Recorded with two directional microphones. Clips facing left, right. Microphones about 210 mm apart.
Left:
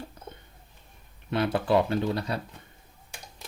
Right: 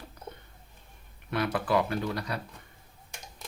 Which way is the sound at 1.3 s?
25° left (ahead or behind).